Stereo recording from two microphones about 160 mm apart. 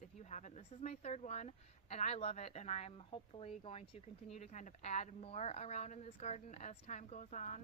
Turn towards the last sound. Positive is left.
turn(degrees=50)  # may be behind; listen again after turning